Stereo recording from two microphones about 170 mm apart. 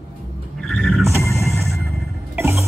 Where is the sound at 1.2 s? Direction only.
15° left (ahead or behind).